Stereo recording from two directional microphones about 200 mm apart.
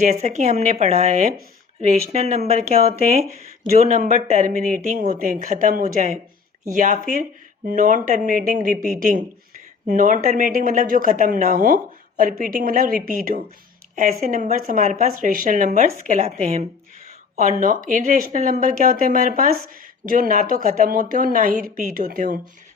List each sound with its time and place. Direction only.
0.0 s speech: 35° right (ahead or behind)
17.6 s speech: 40° right (ahead or behind)